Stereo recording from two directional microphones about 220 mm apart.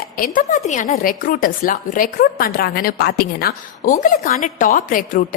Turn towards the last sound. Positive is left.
turn(degrees=40)  # may be behind; listen again after turning